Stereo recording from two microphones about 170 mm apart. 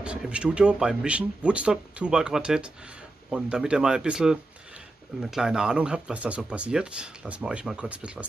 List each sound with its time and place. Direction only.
0.0 s speech: 5° right (ahead or behind)